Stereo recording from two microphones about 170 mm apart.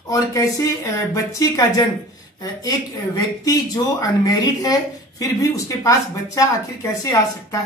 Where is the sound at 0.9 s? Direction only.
20° left (ahead or behind).